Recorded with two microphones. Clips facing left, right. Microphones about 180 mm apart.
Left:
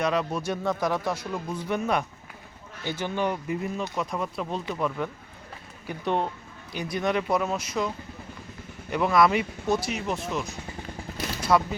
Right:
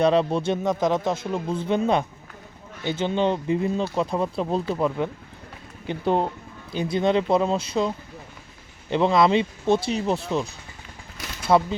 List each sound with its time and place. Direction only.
0.0 s speech: 30° right (ahead or behind)
11.5 s speech: 25° right (ahead or behind)